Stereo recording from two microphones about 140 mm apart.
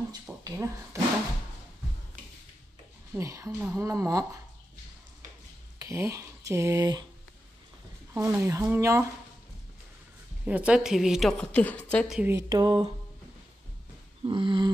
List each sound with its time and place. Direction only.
0.1 s a sound: 25° right (ahead or behind)
3.1 s speech: 20° right (ahead or behind)
3.9 s speech: 20° right (ahead or behind)
5.8 s speech: 20° right (ahead or behind)
8.1 s speech: 20° right (ahead or behind)
10.4 s a woman's voice: 10° right (ahead or behind); by 12.1 s 10° left (ahead or behind)
12.3 s speech: 25° right (ahead or behind)
14.2 s a sound: 35° right (ahead or behind)